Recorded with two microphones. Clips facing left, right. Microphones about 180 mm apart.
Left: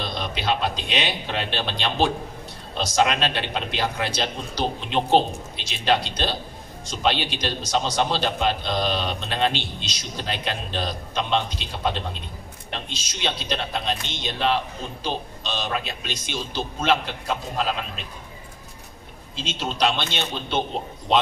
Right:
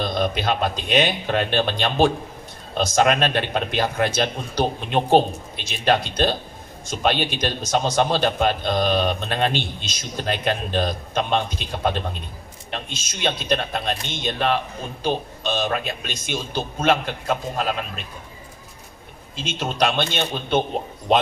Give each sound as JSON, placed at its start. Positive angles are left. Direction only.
{"t": 0.0, "sound": "a man's voice", "side_deg": -50}
{"t": 19.3, "sound": "a man's voice", "side_deg": -50}